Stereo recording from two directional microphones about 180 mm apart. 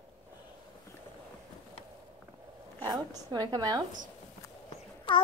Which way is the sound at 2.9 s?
20° right (ahead or behind).